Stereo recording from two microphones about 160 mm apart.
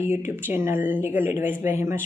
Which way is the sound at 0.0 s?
15° right (ahead or behind).